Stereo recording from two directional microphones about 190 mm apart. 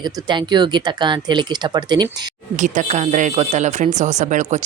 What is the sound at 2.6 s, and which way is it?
Speech, 40° right (ahead or behind).